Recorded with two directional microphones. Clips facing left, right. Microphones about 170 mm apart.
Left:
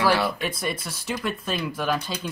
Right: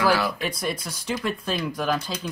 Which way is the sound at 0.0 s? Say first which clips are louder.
Even; 30° left (ahead or behind).